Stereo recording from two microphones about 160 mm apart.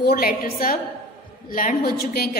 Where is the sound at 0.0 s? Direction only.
70° left (ahead or behind).